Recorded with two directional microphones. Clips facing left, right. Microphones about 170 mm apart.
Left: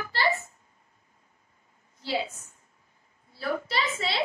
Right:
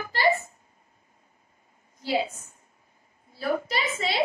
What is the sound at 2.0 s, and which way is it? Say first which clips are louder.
Speech: right 4 dB; 15° right (ahead or behind).